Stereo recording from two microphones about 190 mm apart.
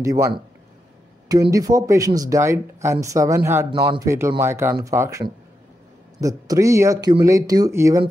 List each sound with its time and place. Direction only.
0.0 s speech: 15° right (ahead or behind)
1.5 s speech: 20° right (ahead or behind)